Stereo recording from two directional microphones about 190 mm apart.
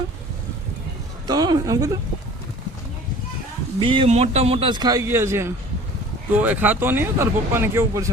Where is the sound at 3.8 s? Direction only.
25° right (ahead or behind).